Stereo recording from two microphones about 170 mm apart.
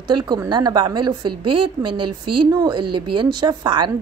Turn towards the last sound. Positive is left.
turn(degrees=-25)  # may be behind; listen again after turning